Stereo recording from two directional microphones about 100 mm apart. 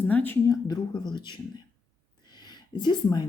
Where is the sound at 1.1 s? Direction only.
50° left (ahead or behind).